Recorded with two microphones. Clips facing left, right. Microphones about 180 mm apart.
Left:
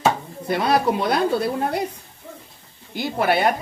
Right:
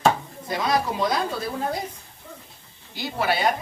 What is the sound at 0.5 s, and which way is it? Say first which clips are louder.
A woman's voice: left 5 dB; 65° left (ahead or behind).